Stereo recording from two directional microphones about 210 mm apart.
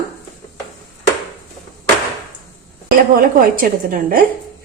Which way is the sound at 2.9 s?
40° right (ahead or behind).